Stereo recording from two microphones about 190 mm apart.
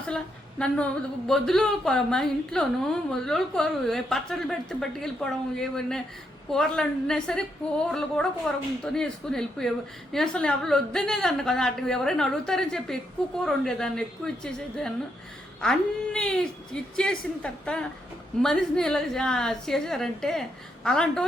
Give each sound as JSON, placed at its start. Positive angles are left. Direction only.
{"t": 0.6, "sound": "a woman's voice", "side_deg": 5}